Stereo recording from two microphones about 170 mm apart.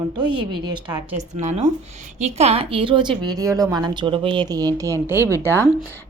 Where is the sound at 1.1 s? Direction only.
40° right (ahead or behind).